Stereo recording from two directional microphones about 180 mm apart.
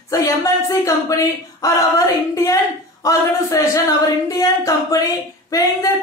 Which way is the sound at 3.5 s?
20° left (ahead or behind).